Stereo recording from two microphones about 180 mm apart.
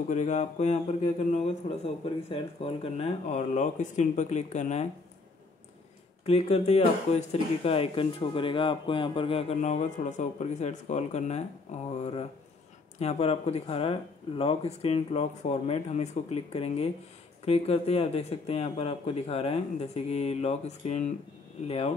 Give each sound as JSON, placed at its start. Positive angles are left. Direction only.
{"t": 0.1, "sound": "speech", "side_deg": 40}
{"t": 6.2, "sound": "speech", "side_deg": 35}